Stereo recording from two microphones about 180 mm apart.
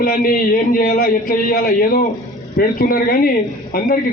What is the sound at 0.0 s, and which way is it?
Speech, 50° left (ahead or behind).